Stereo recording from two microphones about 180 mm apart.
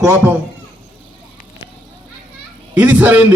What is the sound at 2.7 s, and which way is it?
Speech, 10° right (ahead or behind).